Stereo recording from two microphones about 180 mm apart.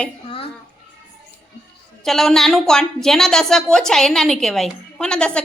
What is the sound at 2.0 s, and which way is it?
A woman's voice, centre (ahead or behind).